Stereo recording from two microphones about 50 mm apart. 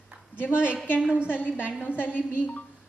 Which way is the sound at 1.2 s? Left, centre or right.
Left.